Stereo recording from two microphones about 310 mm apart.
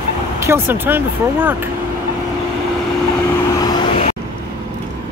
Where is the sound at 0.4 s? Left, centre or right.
Centre.